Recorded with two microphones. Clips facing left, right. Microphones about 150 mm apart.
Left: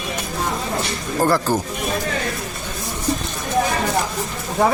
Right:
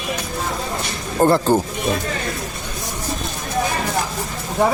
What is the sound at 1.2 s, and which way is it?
Speech, 25° right (ahead or behind).